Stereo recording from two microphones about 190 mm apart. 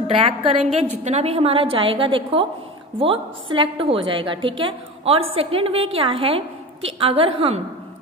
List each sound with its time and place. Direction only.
0.0 s a woman's voice: 30° right (ahead or behind)